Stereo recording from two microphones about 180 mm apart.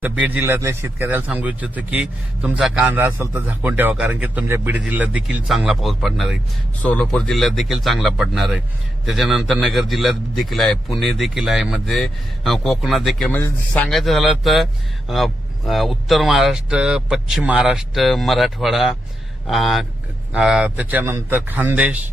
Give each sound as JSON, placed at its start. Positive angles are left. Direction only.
{"t": 0.0, "sound": "a man's voice", "side_deg": -10}